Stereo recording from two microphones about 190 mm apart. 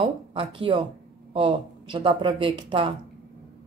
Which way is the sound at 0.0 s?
30° right (ahead or behind).